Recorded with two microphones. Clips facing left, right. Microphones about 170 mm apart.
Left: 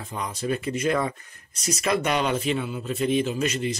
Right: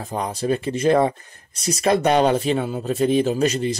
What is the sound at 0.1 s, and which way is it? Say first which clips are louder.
Speech: right 5 dB; 35° right (ahead or behind).